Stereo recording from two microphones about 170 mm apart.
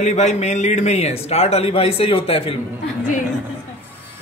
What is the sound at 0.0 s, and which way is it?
A man's voice, 40° left (ahead or behind).